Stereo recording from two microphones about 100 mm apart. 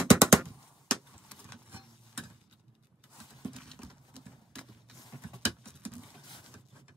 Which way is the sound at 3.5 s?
5° left (ahead or behind).